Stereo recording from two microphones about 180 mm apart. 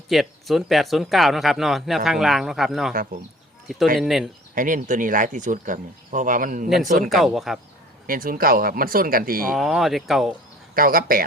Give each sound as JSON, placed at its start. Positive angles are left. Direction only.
{"t": 0.1, "sound": "speech", "side_deg": 0}
{"t": 3.9, "sound": "speech", "side_deg": 0}
{"t": 4.5, "sound": "speech", "side_deg": -45}
{"t": 7.1, "sound": "speech", "side_deg": 0}
{"t": 8.0, "sound": "speech", "side_deg": -50}
{"t": 9.5, "sound": "speech", "side_deg": 0}
{"t": 10.8, "sound": "speech", "side_deg": -55}